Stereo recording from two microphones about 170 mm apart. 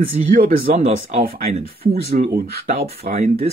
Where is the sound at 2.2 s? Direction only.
50° right (ahead or behind).